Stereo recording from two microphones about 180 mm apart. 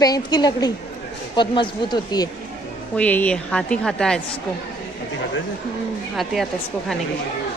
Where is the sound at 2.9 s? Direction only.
10° left (ahead or behind).